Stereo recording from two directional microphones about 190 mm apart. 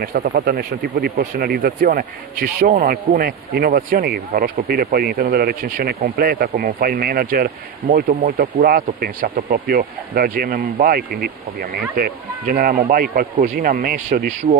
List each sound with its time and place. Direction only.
0.0 s speech: 55° right (ahead or behind)
14.4 s speech: 30° right (ahead or behind)